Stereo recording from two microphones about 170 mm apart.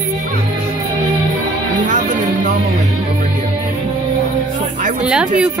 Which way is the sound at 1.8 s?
45° right (ahead or behind).